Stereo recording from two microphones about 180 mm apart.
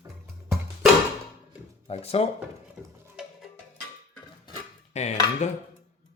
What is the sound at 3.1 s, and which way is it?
Music, centre (ahead or behind).